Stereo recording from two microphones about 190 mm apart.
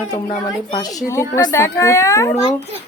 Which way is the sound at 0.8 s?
15° left (ahead or behind).